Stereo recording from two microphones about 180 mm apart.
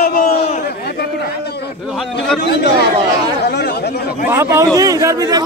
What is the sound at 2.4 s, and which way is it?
Chatter, 65° left (ahead or behind).